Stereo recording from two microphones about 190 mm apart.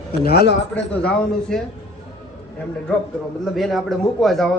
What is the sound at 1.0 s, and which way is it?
Speech, 5° left (ahead or behind).